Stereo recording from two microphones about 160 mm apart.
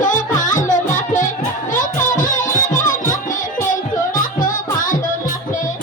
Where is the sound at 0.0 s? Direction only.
55° left (ahead or behind).